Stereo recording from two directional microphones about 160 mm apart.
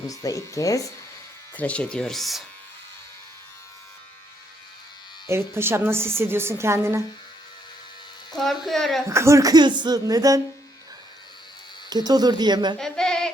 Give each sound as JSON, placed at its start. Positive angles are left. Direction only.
{"t": 0.1, "sound": "speech", "side_deg": 20}
{"t": 1.5, "sound": "speech", "side_deg": 10}
{"t": 5.3, "sound": "a woman's voice", "side_deg": -15}
{"t": 8.6, "sound": "speech", "side_deg": 0}
{"t": 9.0, "sound": "speech", "side_deg": -20}
{"t": 11.9, "sound": "speech", "side_deg": -25}
{"t": 12.8, "sound": "speech", "side_deg": 5}